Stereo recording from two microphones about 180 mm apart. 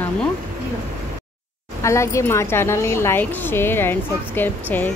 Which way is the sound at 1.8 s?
15° left (ahead or behind).